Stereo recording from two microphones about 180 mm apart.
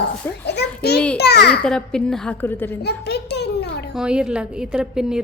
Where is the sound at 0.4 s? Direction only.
65° left (ahead or behind).